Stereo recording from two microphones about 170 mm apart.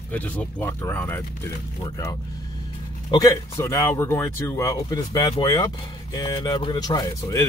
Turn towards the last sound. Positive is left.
turn(degrees=20)  # may be behind; listen again after turning